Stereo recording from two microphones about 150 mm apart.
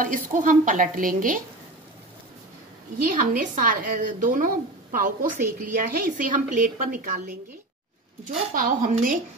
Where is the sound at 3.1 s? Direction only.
60° right (ahead or behind).